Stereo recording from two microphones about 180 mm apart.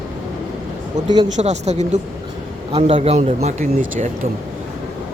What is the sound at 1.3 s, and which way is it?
Speech, 40° right (ahead or behind).